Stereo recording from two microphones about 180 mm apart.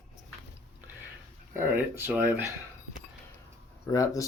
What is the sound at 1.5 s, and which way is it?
Speech, 10° right (ahead or behind).